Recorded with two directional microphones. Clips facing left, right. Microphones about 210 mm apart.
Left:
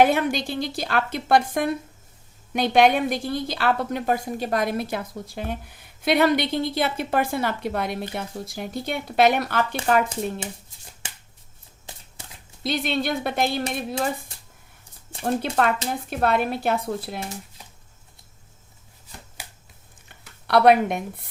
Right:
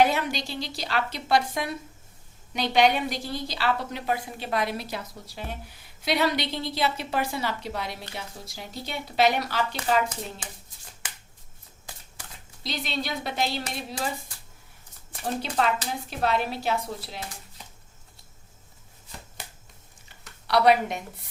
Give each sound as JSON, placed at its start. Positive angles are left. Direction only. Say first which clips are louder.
{"t": 0.0, "sound": "a woman's voice", "louder": "left 4 dB", "side_deg": 55}
{"t": 12.6, "sound": "a woman's voice", "louder": "left 7 dB", "side_deg": 55}
{"t": 15.2, "sound": "a woman's voice", "louder": "left 4 dB", "side_deg": 55}
{"t": 19.4, "sound": "shuffling cards", "louder": "even", "side_deg": 10}
{"t": 20.5, "sound": "a woman's voice", "louder": "left 4 dB", "side_deg": 55}